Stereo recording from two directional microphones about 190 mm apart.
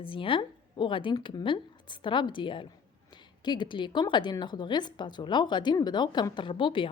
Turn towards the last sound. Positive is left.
turn(degrees=25)  # may be behind; listen again after turning